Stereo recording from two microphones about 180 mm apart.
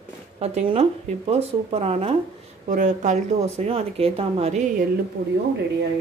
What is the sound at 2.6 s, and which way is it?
Speech, 45° right (ahead or behind).